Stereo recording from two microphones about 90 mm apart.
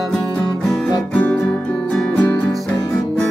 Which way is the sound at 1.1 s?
20° left (ahead or behind).